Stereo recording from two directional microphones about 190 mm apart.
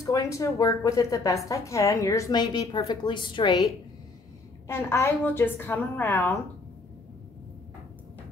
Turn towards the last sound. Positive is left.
turn(degrees=10)  # may be behind; listen again after turning